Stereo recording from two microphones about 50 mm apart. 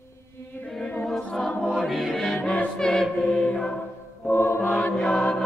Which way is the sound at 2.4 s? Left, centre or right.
Left.